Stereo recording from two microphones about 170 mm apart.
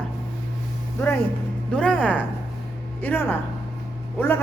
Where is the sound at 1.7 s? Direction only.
5° left (ahead or behind).